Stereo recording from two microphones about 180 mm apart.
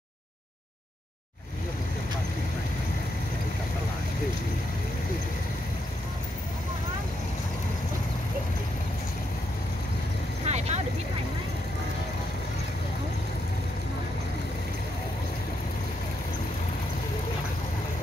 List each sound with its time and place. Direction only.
10.4 s vehicle: 35° right (ahead or behind)